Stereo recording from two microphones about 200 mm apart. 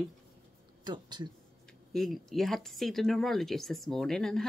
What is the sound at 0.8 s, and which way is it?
Speech, 20° right (ahead or behind).